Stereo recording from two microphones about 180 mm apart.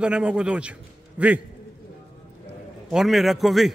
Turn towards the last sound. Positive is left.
turn(degrees=0)  # may be behind; listen again after turning